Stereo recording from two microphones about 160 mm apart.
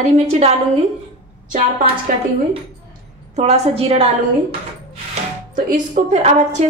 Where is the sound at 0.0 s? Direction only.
45° right (ahead or behind).